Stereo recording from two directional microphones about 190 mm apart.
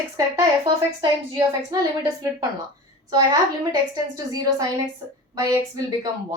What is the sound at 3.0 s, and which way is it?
Speech, 20° right (ahead or behind).